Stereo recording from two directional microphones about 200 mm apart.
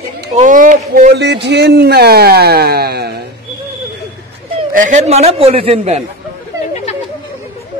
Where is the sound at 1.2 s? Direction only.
60° right (ahead or behind).